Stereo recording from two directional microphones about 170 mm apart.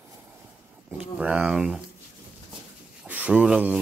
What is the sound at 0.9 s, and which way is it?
Speech, 5° right (ahead or behind).